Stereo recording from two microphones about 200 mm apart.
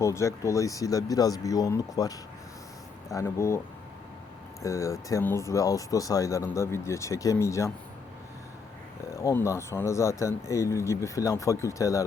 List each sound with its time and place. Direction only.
0.0 s speech: 15° left (ahead or behind)
4.6 s speech: 15° left (ahead or behind)
9.2 s speech: 15° left (ahead or behind)